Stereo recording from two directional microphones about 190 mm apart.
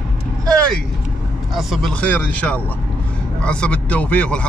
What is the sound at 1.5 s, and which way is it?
Speech, centre (ahead or behind).